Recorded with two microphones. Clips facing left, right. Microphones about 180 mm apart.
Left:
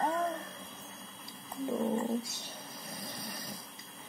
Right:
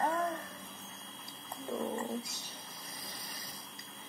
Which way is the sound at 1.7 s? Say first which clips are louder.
Left 4 dB; 15° left (ahead or behind).